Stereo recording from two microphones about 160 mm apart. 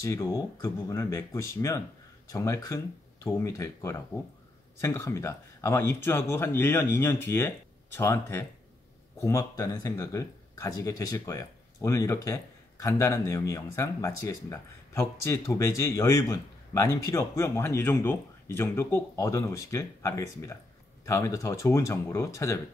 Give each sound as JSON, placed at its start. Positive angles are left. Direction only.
{"t": 0.0, "sound": "speech", "side_deg": 20}